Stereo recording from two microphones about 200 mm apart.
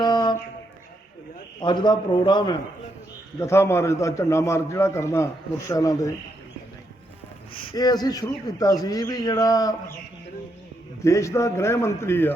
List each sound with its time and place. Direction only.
0.0 s mantra: 20° left (ahead or behind)
1.6 s a man's voice: 20° left (ahead or behind)
7.8 s a man's voice: 20° left (ahead or behind)
11.0 s a man's voice: 15° left (ahead or behind)